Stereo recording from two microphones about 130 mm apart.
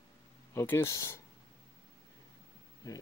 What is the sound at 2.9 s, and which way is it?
Speech, 25° left (ahead or behind).